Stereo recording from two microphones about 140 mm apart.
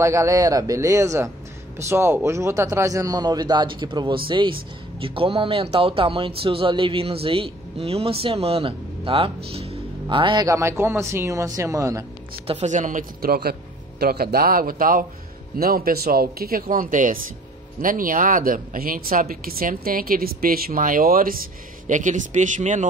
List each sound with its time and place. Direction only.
0.0 s a man's voice: 20° right (ahead or behind)
10.4 s a man's voice: 20° right (ahead or behind)
12.4 s speech: 55° right (ahead or behind); by 21.4 s 90° right
21.8 s speech: 65° right (ahead or behind)